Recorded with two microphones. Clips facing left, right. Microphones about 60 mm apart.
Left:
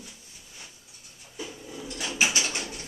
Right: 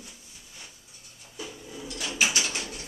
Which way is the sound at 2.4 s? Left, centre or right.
Centre.